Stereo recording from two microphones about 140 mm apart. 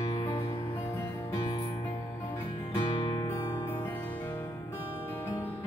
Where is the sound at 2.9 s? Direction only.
35° left (ahead or behind).